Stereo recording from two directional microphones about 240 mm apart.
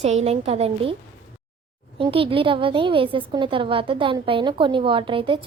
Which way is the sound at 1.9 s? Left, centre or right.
Right.